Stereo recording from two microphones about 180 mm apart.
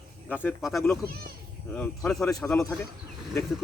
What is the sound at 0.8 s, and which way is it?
Speech, 15° left (ahead or behind).